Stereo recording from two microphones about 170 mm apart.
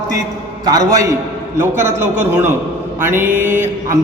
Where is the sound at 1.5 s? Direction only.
15° right (ahead or behind).